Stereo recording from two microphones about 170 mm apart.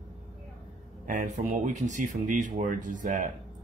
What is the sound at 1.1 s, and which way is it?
Speech, 50° right (ahead or behind).